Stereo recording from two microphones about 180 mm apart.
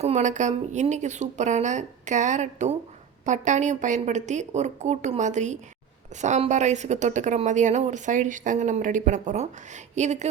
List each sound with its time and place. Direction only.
0.0 s a woman's voice: 40° right (ahead or behind)